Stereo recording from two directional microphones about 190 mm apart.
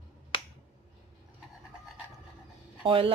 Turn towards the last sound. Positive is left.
turn(degrees=-30)  # may be behind; listen again after turning